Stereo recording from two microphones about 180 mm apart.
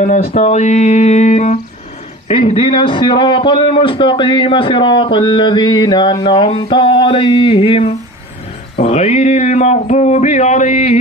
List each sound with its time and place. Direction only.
0.0 s a man's voice: 45° left (ahead or behind)